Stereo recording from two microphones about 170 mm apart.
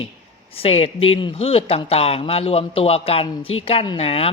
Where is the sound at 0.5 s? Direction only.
35° left (ahead or behind).